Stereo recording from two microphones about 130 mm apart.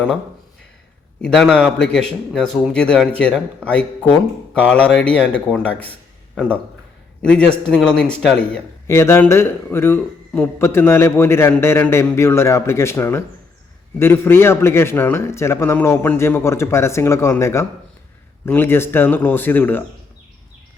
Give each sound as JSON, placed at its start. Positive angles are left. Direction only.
{"t": 1.2, "sound": "a man's voice", "side_deg": 5}
{"t": 8.9, "sound": "a man's voice", "side_deg": 20}